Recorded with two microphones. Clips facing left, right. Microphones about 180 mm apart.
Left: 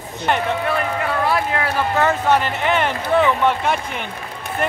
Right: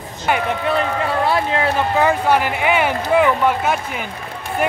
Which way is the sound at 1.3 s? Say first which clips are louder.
Right 2 dB; 25° right (ahead or behind).